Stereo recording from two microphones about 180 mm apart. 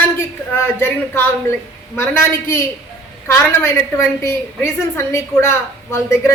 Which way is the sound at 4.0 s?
15° left (ahead or behind).